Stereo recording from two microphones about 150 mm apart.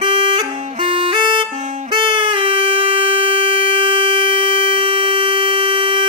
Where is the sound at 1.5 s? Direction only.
50° right (ahead or behind).